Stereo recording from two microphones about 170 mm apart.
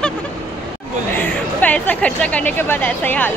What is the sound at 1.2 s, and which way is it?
A woman's voice, 10° left (ahead or behind).